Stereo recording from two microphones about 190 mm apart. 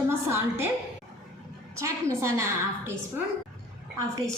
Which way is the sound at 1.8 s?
15° right (ahead or behind).